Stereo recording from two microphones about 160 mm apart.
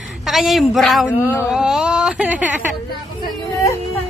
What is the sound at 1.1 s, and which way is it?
Speech, 10° left (ahead or behind).